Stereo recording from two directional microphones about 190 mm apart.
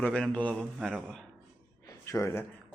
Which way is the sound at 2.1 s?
15° left (ahead or behind).